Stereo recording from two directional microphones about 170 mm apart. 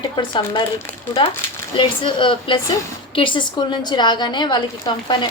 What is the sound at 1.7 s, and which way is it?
A woman's voice, 30° left (ahead or behind).